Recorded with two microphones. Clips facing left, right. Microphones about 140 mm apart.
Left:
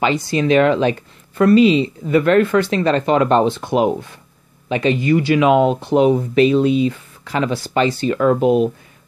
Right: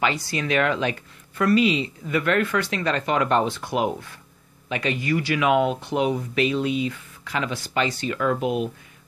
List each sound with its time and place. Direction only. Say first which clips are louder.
0.0 s speech: left 8 dB; 20° left (ahead or behind)